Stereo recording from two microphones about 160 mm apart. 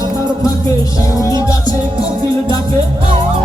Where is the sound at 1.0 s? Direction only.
20° left (ahead or behind).